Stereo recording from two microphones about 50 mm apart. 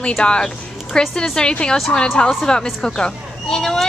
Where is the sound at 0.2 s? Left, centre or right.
Centre.